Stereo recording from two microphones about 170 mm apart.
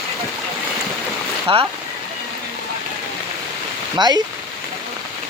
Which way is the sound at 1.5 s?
35° right (ahead or behind).